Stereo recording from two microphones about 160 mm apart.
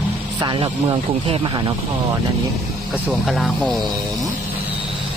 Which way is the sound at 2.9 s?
Centre (ahead or behind).